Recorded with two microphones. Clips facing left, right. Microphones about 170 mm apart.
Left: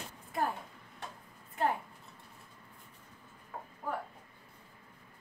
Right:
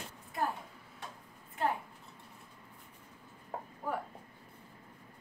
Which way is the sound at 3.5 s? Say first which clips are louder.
Right 3 dB; 40° right (ahead or behind).